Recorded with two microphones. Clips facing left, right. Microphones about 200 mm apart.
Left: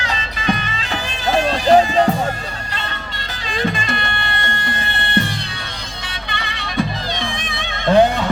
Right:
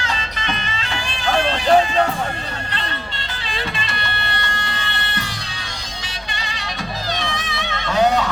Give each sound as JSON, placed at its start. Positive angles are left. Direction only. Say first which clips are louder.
{"t": 0.1, "sound": "music", "louder": "left 5 dB", "side_deg": 40}
{"t": 3.5, "sound": "music", "louder": "left 7 dB", "side_deg": 45}
{"t": 4.8, "sound": "music", "louder": "left 7 dB", "side_deg": 55}
{"t": 6.3, "sound": "music", "louder": "left 9 dB", "side_deg": 60}
{"t": 7.9, "sound": "a sound", "louder": "left 4 dB", "side_deg": 55}